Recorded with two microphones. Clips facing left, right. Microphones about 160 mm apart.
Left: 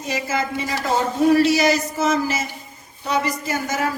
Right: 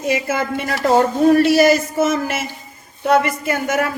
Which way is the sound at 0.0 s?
60° right (ahead or behind).